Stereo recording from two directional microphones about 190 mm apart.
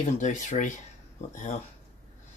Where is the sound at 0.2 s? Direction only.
40° left (ahead or behind).